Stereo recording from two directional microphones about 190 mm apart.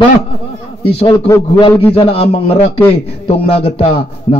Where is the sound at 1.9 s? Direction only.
30° left (ahead or behind).